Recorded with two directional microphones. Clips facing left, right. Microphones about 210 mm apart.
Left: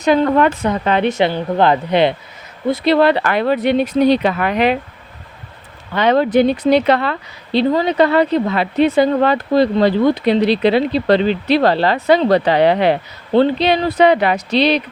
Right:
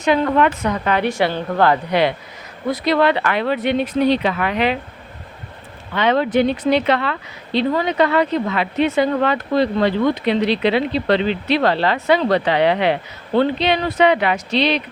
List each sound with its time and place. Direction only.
0.0 s a woman's voice: 40° left (ahead or behind)
5.9 s speech: 40° left (ahead or behind)